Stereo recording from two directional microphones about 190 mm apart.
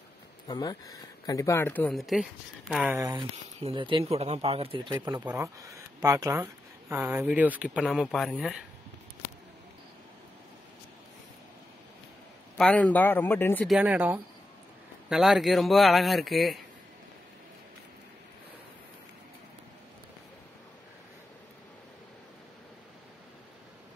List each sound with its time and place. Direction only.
0.5 s speech: 20° left (ahead or behind); by 3.0 s centre (ahead or behind)
3.0 s speech: 20° right (ahead or behind); by 8.5 s centre (ahead or behind)
12.5 s speech: 5° left (ahead or behind)
13.7 s speech: 5° right (ahead or behind)